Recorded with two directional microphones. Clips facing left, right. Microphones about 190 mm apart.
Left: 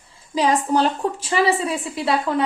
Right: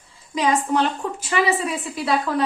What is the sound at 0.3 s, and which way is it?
A woman's voice, 35° left (ahead or behind).